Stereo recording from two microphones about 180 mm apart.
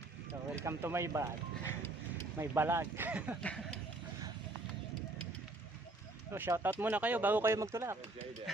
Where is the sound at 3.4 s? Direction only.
5° left (ahead or behind).